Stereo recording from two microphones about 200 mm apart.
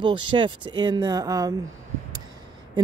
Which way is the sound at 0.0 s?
25° right (ahead or behind).